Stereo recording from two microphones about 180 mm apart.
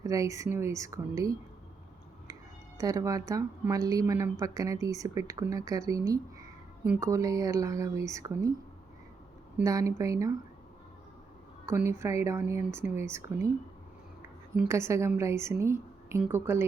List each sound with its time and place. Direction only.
0.0 s speech: 20° right (ahead or behind)
2.7 s a woman's voice: 20° right (ahead or behind)
9.6 s speech: 15° right (ahead or behind)
11.7 s speech: 15° right (ahead or behind)
14.7 s speech: 15° right (ahead or behind)